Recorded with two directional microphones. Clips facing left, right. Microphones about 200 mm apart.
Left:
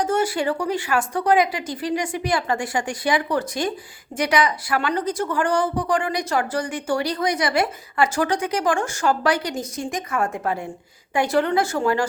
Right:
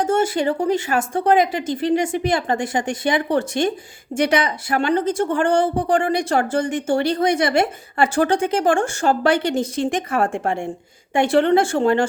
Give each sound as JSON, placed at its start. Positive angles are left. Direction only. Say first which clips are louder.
{"t": 0.0, "sound": "a woman's voice", "louder": "right 3 dB", "side_deg": -25}